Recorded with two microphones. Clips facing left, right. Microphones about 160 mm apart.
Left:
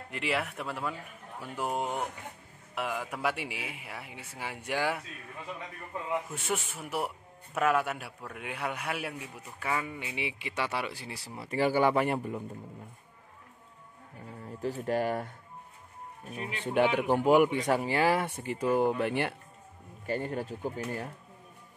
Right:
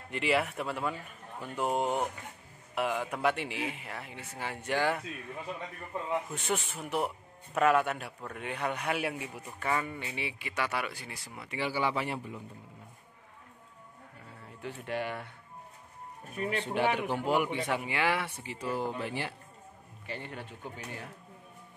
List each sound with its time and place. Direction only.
0.1 s a man's voice: centre (ahead or behind)
6.3 s a man's voice: 5° left (ahead or behind); by 12.4 s 50° left (ahead or behind)
14.6 s speech: 40° left (ahead or behind)
16.7 s speech: 50° left (ahead or behind)
20.1 s speech: 40° left (ahead or behind)